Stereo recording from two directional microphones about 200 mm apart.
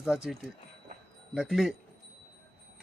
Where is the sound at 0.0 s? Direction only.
5° right (ahead or behind).